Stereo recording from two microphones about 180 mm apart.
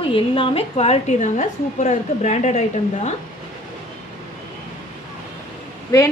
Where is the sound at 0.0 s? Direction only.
30° left (ahead or behind).